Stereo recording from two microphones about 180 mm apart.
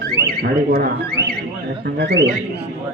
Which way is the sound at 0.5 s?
55° right (ahead or behind).